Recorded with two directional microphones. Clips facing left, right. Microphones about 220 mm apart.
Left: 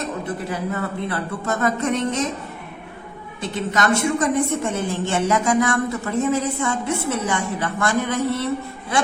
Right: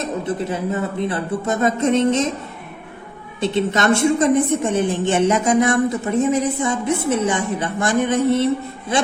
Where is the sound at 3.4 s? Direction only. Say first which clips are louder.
Right 4 dB; 25° right (ahead or behind).